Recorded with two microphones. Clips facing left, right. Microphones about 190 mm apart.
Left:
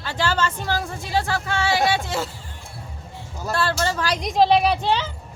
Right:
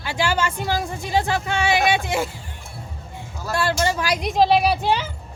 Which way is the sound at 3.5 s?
15° right (ahead or behind).